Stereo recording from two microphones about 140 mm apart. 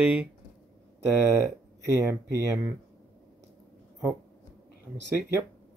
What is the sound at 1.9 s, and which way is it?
Speech, 20° right (ahead or behind).